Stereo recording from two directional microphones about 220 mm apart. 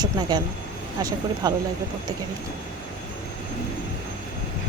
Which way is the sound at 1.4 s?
20° right (ahead or behind).